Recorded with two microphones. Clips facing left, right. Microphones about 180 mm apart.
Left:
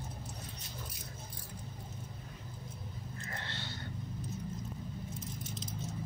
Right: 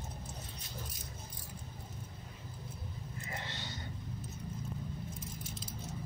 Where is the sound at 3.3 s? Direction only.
15° right (ahead or behind).